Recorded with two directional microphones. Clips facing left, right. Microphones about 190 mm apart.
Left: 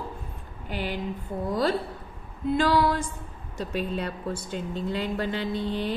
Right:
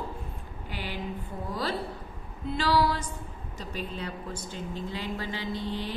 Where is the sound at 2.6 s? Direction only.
50° left (ahead or behind).